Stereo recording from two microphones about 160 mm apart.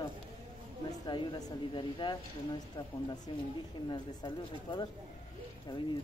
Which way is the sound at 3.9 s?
25° left (ahead or behind).